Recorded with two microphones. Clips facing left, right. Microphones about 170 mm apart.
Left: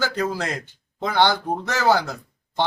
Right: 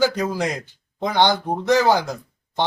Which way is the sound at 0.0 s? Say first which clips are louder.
Right 4 dB; 15° right (ahead or behind).